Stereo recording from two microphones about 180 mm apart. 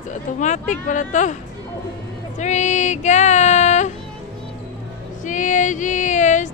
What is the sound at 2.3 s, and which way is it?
Speech, 40° left (ahead or behind).